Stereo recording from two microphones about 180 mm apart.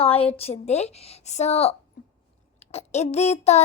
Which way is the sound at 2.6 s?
35° left (ahead or behind).